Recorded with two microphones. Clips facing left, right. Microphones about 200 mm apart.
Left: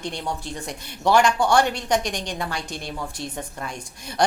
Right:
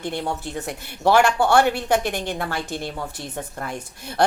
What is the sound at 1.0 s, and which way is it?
Speech, 60° right (ahead or behind).